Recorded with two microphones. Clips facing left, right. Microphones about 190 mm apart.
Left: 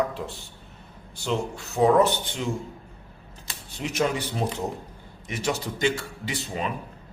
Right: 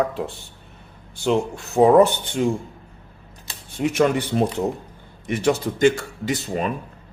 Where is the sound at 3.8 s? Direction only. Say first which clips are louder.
Right 7 dB; 55° right (ahead or behind).